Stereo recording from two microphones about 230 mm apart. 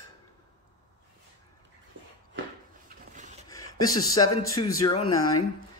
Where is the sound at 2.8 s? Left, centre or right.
Right.